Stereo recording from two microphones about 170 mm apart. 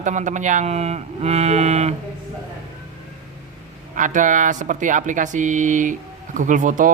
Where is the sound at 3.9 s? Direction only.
50° right (ahead or behind).